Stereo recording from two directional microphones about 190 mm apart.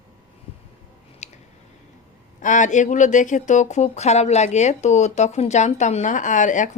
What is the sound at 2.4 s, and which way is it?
Speech, 40° left (ahead or behind).